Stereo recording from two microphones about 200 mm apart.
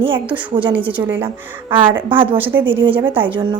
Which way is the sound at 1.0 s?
15° right (ahead or behind).